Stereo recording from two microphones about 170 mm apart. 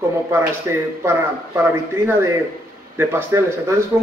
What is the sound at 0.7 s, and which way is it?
A man's voice, 15° right (ahead or behind).